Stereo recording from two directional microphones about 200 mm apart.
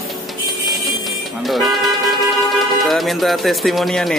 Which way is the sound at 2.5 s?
Centre (ahead or behind).